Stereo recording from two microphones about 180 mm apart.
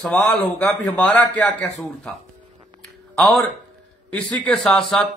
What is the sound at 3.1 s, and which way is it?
A man's voice, centre (ahead or behind).